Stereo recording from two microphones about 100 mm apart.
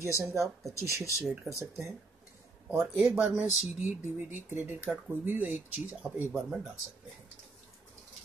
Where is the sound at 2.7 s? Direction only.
20° right (ahead or behind).